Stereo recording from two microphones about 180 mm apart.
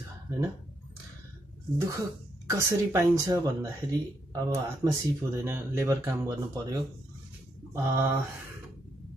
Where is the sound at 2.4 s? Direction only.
15° right (ahead or behind).